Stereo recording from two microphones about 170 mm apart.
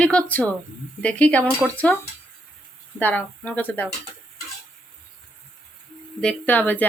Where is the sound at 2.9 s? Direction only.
10° left (ahead or behind).